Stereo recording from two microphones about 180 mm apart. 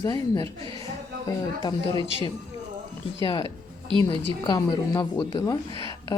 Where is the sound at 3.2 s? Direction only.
25° left (ahead or behind).